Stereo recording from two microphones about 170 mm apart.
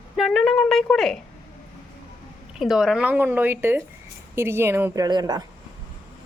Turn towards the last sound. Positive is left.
turn(degrees=-25)  # may be behind; listen again after turning